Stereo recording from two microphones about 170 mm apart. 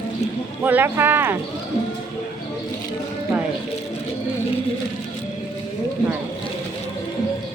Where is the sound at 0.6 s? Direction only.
10° right (ahead or behind).